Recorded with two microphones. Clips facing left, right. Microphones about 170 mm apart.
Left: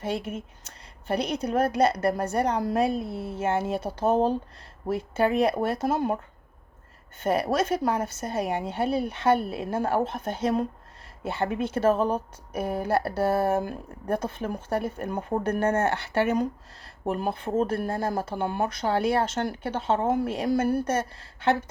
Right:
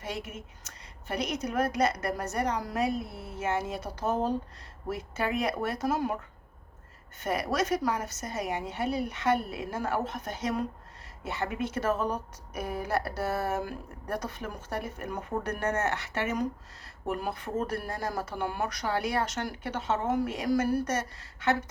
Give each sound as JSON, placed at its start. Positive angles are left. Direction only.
{"t": 0.0, "sound": "a woman's voice", "side_deg": 30}
{"t": 7.2, "sound": "a woman's voice", "side_deg": 30}